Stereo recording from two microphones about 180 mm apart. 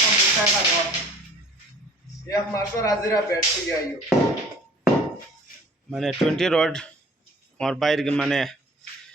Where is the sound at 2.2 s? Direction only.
20° left (ahead or behind).